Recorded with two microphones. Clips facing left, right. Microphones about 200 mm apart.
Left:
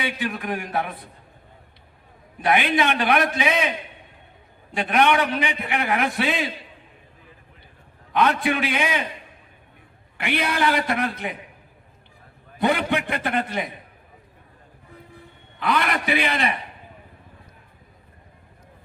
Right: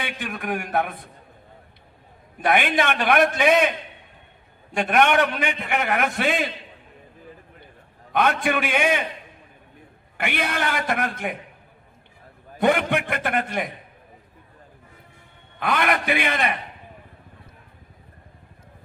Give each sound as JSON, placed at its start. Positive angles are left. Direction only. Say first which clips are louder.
{"t": 0.0, "sound": "a man's voice", "louder": "left 3 dB", "side_deg": -55}
{"t": 2.4, "sound": "a man's voice", "louder": "even", "side_deg": -50}
{"t": 4.7, "sound": "a man's voice", "louder": "even", "side_deg": -50}
{"t": 8.1, "sound": "a man's voice", "louder": "left 1 dB", "side_deg": -55}
{"t": 10.2, "sound": "a man's voice", "louder": "left 2 dB", "side_deg": -55}
{"t": 12.5, "sound": "a man's voice", "louder": "right 1 dB", "side_deg": -55}
{"t": 15.5, "sound": "a man's voice", "louder": "right 1 dB", "side_deg": -55}